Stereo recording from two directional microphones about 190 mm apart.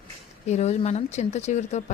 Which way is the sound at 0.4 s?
35° left (ahead or behind).